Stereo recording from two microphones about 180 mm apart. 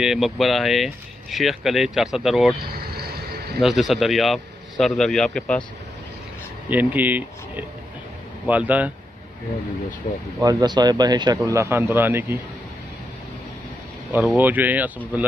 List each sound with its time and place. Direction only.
0.0 s speech: centre (ahead or behind)
3.5 s speech: centre (ahead or behind)
6.7 s speech: 10° right (ahead or behind)
10.1 s speech: 45° left (ahead or behind)
10.4 s speech: 20° right (ahead or behind)
14.1 s speech: 10° right (ahead or behind)